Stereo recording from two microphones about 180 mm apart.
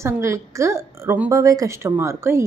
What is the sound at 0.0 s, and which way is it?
A woman's voice, 15° right (ahead or behind).